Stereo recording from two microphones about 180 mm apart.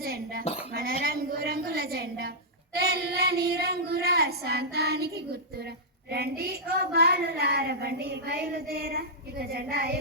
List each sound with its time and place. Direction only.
0.0 s dishes: 55° right (ahead or behind)
0.4 s speech: 35° left (ahead or behind)
0.7 s dishes: 55° right (ahead or behind)
1.0 s a sound: 60° right (ahead or behind)
2.7 s child singing: 65° right (ahead or behind)